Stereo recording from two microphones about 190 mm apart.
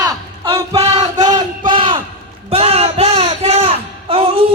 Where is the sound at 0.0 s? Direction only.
20° right (ahead or behind).